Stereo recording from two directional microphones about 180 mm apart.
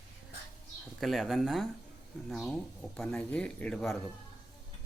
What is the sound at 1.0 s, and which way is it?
Speech, centre (ahead or behind).